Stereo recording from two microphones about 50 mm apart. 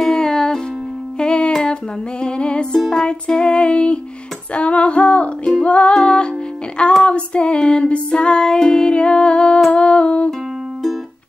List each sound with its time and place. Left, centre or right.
0.0 s music: centre
6.8 s female singing: left